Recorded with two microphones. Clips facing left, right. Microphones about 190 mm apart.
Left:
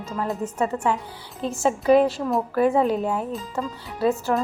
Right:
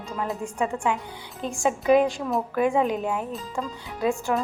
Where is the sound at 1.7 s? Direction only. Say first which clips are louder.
Left 2 dB; 35° left (ahead or behind).